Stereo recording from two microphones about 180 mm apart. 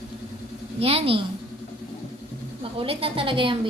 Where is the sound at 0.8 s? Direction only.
35° right (ahead or behind).